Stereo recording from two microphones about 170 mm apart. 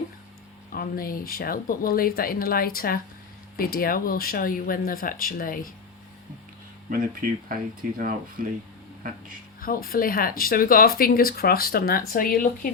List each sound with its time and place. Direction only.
0.7 s speech: 60° left (ahead or behind)
6.9 s speech: 55° right (ahead or behind)
9.6 s speech: 60° left (ahead or behind)